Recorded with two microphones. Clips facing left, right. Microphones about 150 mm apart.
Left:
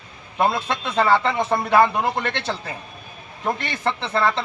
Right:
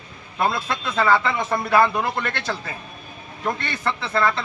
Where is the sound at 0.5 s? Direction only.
25° left (ahead or behind).